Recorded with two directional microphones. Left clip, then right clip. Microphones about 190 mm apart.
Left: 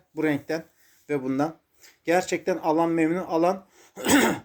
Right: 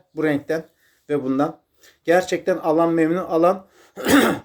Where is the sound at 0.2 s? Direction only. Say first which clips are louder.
Right 5 dB; 15° left (ahead or behind).